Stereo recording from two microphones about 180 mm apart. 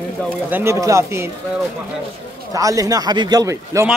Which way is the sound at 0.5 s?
10° right (ahead or behind).